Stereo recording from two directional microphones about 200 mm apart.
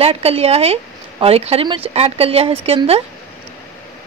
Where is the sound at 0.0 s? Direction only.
30° right (ahead or behind).